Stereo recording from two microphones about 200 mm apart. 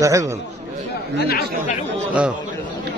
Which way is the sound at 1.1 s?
55° left (ahead or behind).